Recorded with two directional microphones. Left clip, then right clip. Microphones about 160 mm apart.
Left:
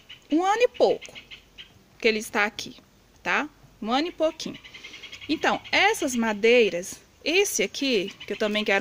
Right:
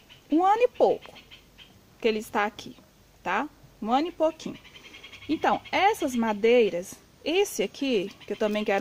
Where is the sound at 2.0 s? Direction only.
5° left (ahead or behind).